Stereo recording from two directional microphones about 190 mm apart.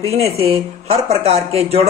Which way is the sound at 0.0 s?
35° right (ahead or behind).